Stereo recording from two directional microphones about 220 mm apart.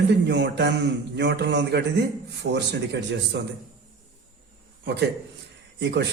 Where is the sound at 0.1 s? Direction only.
50° right (ahead or behind).